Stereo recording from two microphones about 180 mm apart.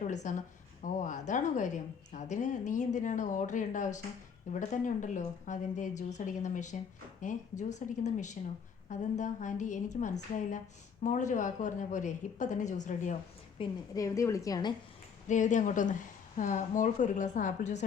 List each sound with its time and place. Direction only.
0.0 s a woman's voice: 40° left (ahead or behind)
13.6 s a woman's voice: 20° left (ahead or behind)
15.3 s a woman's voice: 45° left (ahead or behind)